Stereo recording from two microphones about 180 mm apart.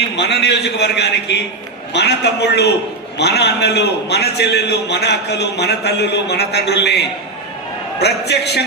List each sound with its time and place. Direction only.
0.2 s a man's voice: 70° left (ahead or behind)